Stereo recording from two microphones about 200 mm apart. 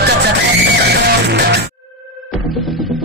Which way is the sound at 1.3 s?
55° right (ahead or behind).